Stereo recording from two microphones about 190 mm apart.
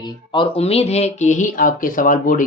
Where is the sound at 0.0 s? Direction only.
25° left (ahead or behind).